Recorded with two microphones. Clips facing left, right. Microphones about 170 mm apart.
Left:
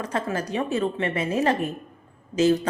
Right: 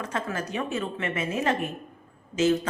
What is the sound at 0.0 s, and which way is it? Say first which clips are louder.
Speech: left 4 dB; 35° left (ahead or behind).